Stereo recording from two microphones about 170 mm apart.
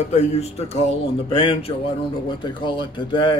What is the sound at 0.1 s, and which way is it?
A man's voice, 40° left (ahead or behind).